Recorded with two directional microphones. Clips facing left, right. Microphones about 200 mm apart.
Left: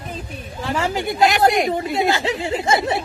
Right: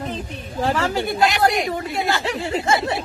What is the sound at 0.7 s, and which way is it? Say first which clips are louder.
Speech: left 3 dB; 15° left (ahead or behind).